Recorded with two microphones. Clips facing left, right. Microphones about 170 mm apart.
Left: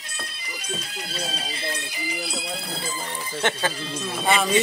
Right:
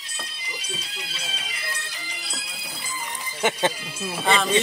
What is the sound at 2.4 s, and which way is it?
Speech, 70° left (ahead or behind).